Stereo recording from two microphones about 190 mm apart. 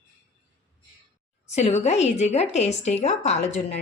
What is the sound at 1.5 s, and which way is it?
Speech, 35° left (ahead or behind).